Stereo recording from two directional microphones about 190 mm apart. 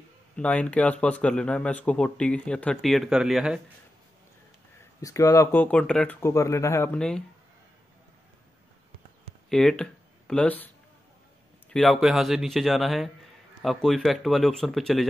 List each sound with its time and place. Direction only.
0.4 s speech: 5° left (ahead or behind)
5.0 s speech: 15° left (ahead or behind)
9.5 s speech: centre (ahead or behind)
11.7 s speech: centre (ahead or behind)